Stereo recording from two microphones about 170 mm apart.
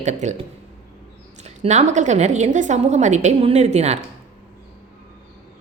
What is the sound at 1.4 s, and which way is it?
A woman's voice, 45° right (ahead or behind).